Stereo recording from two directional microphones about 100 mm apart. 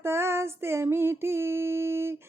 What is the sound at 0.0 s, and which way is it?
Female singing, 25° right (ahead or behind).